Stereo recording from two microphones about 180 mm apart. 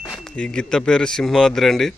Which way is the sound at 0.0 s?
Centre (ahead or behind).